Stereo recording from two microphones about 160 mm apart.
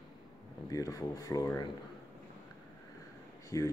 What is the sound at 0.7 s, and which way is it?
Speech, 20° left (ahead or behind).